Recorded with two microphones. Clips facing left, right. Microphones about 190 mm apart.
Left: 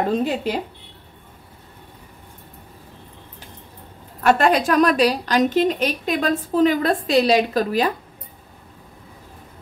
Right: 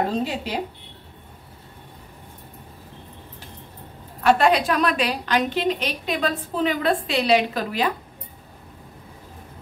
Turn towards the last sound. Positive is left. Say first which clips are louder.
# left 4 dB
turn(degrees=40)  # may be behind; listen again after turning